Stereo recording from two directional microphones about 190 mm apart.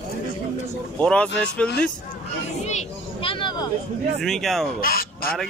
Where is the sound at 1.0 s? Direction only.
5° left (ahead or behind).